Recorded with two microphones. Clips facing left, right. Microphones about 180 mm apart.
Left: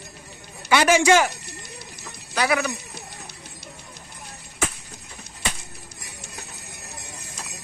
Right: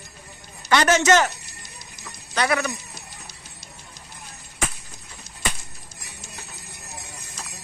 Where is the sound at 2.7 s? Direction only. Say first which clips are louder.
Left 3 dB; 65° left (ahead or behind).